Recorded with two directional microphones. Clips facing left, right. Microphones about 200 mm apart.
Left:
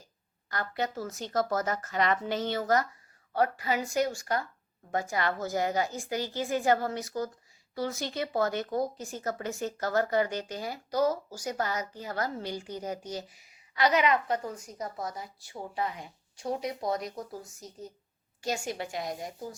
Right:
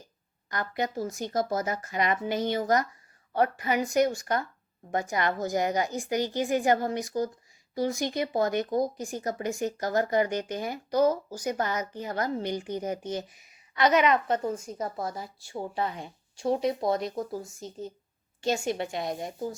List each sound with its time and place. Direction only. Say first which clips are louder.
0.5 s a woman's voice: right 2 dB; 15° right (ahead or behind)